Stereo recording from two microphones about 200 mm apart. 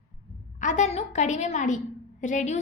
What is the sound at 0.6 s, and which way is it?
A woman's voice, 35° left (ahead or behind).